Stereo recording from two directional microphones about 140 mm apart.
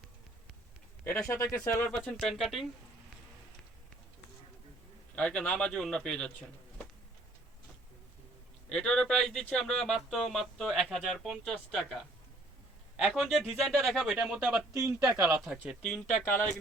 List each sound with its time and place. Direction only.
1.3 s speech: 20° left (ahead or behind)
1.9 s speech: 10° left (ahead or behind)
5.1 s speech: 10° left (ahead or behind)
8.7 s speech: 5° left (ahead or behind)
14.7 s a man's voice: 15° right (ahead or behind)
15.0 s speech: 5° right (ahead or behind)